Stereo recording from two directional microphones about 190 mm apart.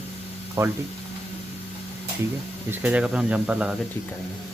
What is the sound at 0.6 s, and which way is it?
Speech, 15° right (ahead or behind).